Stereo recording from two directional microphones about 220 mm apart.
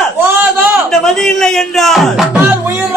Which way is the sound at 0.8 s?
Centre (ahead or behind).